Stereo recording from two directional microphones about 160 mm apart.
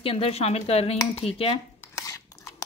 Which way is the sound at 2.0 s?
20° left (ahead or behind).